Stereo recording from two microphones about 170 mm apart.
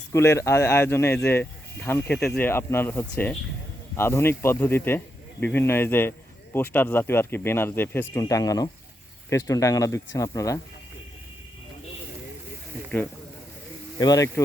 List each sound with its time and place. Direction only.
0.1 s speech: 15° left (ahead or behind)
14.0 s speech: 20° left (ahead or behind)